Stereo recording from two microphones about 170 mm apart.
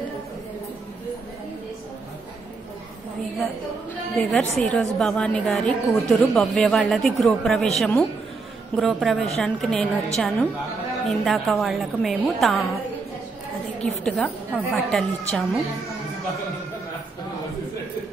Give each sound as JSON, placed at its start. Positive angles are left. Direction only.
{"t": 4.2, "sound": "a woman's voice", "side_deg": 0}
{"t": 13.7, "sound": "a woman's voice", "side_deg": 5}